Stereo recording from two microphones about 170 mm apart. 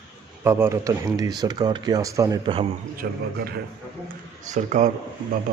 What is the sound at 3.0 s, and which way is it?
Speech, 70° right (ahead or behind).